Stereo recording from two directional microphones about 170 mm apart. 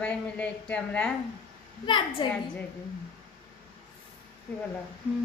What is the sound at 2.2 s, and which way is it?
Speech, 25° left (ahead or behind).